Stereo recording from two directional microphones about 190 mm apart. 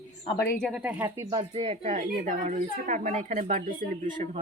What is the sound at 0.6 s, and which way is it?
Speech, 5° right (ahead or behind).